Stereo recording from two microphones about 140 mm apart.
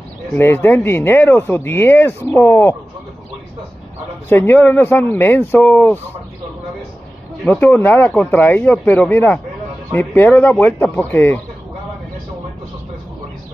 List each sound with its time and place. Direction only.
0.3 s speech: 15° left (ahead or behind)
4.3 s speech: 15° left (ahead or behind)
7.4 s speech: 15° left (ahead or behind)